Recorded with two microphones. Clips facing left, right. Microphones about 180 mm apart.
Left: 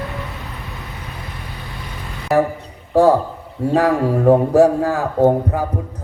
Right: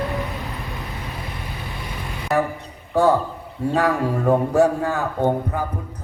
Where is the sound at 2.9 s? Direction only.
30° left (ahead or behind).